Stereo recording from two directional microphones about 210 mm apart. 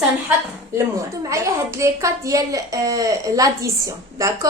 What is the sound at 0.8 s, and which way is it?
A woman's voice, 15° right (ahead or behind).